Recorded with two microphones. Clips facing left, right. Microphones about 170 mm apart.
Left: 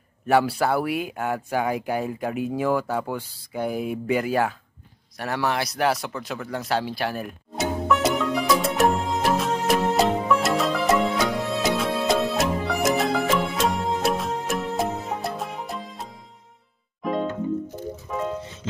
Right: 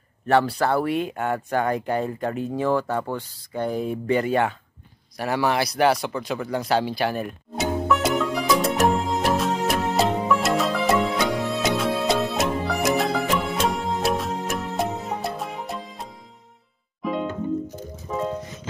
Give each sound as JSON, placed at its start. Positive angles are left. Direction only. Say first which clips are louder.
{"t": 0.3, "sound": "speech", "louder": "even", "side_deg": 10}
{"t": 5.1, "sound": "a sound", "louder": "right 3 dB", "side_deg": 0}
{"t": 18.4, "sound": "music", "louder": "right 1 dB", "side_deg": 30}